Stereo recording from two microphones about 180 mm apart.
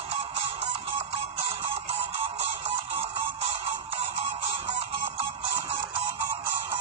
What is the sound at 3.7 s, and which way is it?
Music, 35° right (ahead or behind).